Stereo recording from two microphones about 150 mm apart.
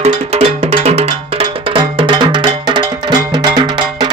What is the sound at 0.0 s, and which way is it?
Music, 45° right (ahead or behind).